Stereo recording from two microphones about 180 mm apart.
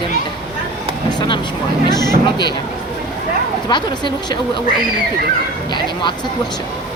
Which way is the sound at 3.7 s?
25° left (ahead or behind).